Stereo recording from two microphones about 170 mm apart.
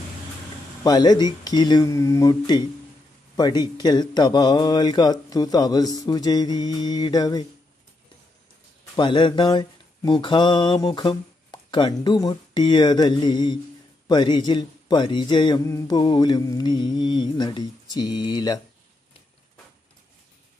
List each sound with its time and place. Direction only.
0.8 s speech: 25° left (ahead or behind)
8.9 s mantra: 30° left (ahead or behind)
14.0 s speech: 25° left (ahead or behind)